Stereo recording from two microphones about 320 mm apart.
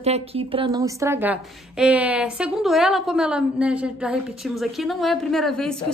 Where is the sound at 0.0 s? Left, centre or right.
Centre.